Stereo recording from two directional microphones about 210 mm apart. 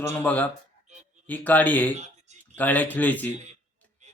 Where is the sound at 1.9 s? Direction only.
35° right (ahead or behind).